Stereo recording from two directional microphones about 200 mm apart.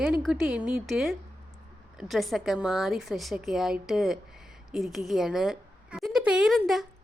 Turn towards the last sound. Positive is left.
turn(degrees=0)  # may be behind; listen again after turning